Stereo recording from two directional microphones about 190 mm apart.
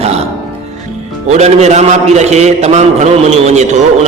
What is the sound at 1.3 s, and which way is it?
A man's voice, 35° right (ahead or behind).